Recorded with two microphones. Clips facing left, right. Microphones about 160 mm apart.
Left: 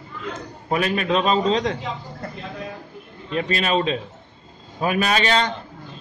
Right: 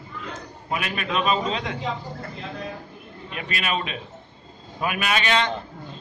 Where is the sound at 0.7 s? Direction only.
35° left (ahead or behind).